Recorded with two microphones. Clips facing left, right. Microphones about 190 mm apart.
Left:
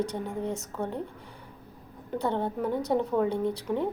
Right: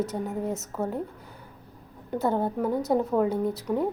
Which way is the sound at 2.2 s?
5° right (ahead or behind).